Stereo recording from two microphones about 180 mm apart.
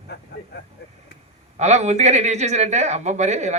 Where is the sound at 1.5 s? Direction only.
40° right (ahead or behind).